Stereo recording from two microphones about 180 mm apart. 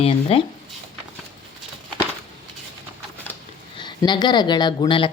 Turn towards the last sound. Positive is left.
turn(degrees=30)  # may be behind; listen again after turning